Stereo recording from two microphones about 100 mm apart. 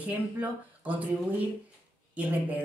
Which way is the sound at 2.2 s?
15° right (ahead or behind).